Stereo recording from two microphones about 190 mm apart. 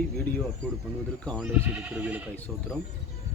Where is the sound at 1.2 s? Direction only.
5° left (ahead or behind).